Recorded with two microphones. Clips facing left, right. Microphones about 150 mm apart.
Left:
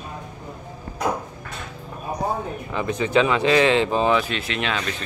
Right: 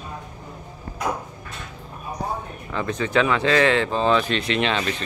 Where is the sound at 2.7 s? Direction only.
15° left (ahead or behind).